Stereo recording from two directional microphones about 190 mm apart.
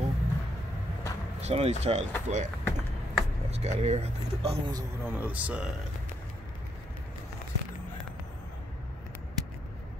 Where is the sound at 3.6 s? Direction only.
35° right (ahead or behind).